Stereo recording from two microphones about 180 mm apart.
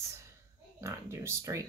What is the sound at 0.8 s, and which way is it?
Speech, 15° right (ahead or behind).